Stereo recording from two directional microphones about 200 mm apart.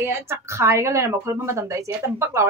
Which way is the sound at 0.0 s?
10° right (ahead or behind).